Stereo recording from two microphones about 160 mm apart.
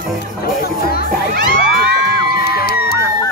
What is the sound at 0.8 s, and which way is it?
Music, 70° left (ahead or behind).